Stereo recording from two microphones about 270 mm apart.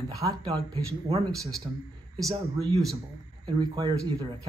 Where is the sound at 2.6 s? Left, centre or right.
Centre.